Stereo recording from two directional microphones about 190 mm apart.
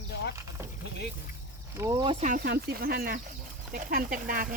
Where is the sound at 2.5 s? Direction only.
55° right (ahead or behind).